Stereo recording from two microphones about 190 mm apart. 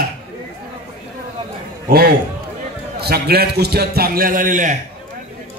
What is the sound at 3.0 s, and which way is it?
A man's voice, 55° right (ahead or behind).